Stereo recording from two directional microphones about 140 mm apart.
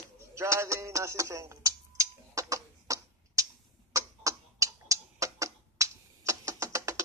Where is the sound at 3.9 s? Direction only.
25° right (ahead or behind).